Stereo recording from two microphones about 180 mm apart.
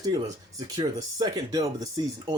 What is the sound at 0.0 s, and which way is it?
Speech, 20° right (ahead or behind).